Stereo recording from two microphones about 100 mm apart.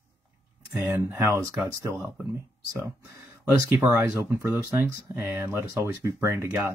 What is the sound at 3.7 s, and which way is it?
Speech, 30° right (ahead or behind).